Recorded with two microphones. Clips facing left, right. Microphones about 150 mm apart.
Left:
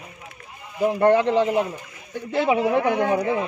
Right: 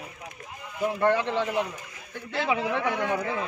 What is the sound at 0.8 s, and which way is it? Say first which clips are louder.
Speech: left 6 dB; 45° left (ahead or behind).